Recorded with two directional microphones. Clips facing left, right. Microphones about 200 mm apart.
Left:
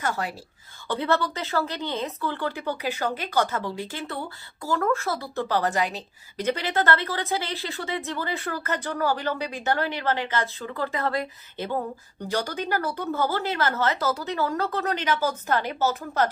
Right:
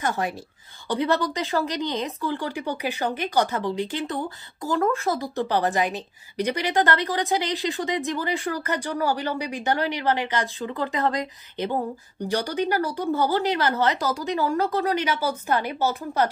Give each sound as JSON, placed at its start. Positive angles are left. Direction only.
{"t": 0.0, "sound": "a woman's voice", "side_deg": -20}